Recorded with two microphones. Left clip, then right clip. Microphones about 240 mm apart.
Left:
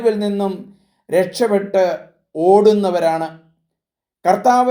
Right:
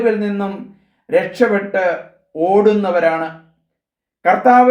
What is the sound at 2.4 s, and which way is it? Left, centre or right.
Speech, left.